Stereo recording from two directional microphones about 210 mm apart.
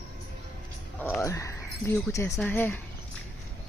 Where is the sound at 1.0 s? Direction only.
10° left (ahead or behind).